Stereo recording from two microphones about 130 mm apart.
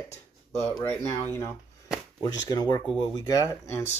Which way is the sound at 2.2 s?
30° left (ahead or behind).